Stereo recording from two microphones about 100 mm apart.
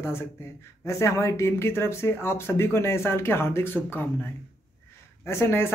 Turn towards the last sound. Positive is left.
turn(degrees=25)  # may be behind; listen again after turning